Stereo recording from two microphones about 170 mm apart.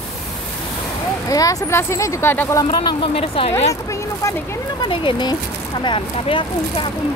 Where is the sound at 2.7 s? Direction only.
25° left (ahead or behind).